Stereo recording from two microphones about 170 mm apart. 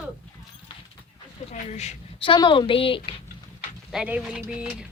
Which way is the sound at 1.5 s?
40° left (ahead or behind).